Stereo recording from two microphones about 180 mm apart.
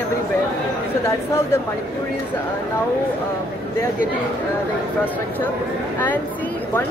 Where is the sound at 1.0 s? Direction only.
15° left (ahead or behind).